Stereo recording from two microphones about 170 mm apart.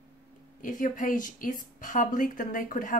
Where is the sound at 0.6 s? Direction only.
50° left (ahead or behind).